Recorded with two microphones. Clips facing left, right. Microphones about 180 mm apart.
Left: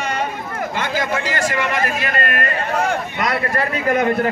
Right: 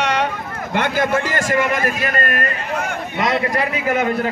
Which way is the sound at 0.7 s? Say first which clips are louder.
Right 5 dB; 55° right (ahead or behind).